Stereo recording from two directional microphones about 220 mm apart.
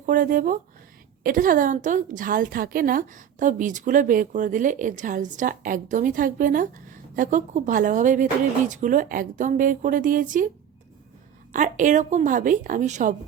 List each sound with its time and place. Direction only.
0.0 s a woman's voice: 40° right (ahead or behind)
11.5 s a woman's voice: 35° right (ahead or behind)